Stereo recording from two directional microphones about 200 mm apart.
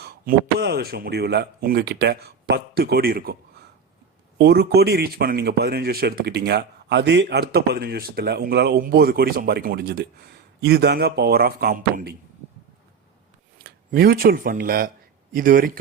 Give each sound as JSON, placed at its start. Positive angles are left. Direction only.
{"t": 0.0, "sound": "speech", "side_deg": -50}
{"t": 13.6, "sound": "speech", "side_deg": -50}